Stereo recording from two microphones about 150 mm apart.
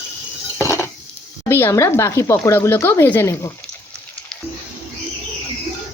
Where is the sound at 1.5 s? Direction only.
15° left (ahead or behind).